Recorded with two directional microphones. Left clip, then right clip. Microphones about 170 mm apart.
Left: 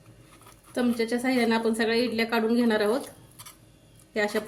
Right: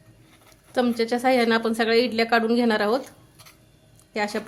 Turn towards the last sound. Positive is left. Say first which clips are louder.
# even
turn(degrees=-35)  # may be behind; listen again after turning